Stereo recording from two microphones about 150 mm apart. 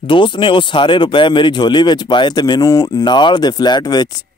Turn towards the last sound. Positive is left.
turn(degrees=25)  # may be behind; listen again after turning